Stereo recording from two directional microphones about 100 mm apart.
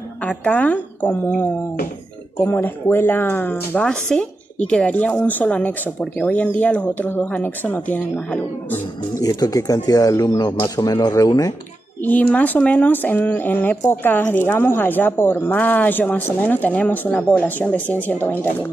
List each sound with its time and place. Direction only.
0.2 s speech: 10° left (ahead or behind)
9.2 s speech: 40° left (ahead or behind)
10.8 s speech: 40° left (ahead or behind)
12.0 s speech: 15° left (ahead or behind)